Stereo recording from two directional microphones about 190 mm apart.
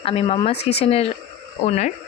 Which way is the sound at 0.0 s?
30° left (ahead or behind).